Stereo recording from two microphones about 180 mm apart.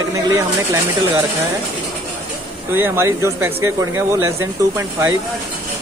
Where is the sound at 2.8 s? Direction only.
15° right (ahead or behind).